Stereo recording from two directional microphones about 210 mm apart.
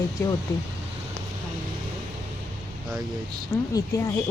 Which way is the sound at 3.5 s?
15° left (ahead or behind).